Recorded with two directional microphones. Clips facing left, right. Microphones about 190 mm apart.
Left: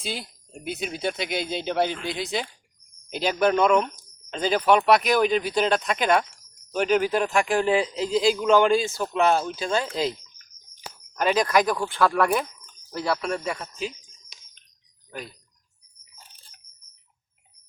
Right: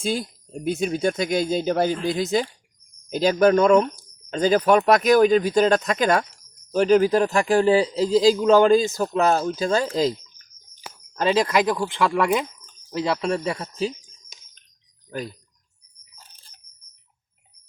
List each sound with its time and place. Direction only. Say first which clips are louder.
0.0 s speech: right 8 dB; 45° right (ahead or behind)